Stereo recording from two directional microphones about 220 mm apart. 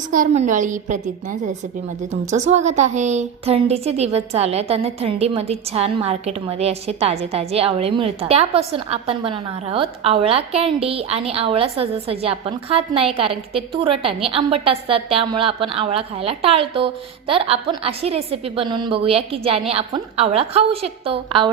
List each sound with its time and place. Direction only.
0.1 s a woman's voice: 35° right (ahead or behind)